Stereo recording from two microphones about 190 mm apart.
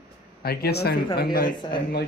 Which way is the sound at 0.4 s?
55° left (ahead or behind).